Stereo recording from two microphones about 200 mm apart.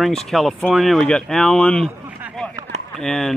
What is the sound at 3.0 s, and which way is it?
Speech, 5° left (ahead or behind).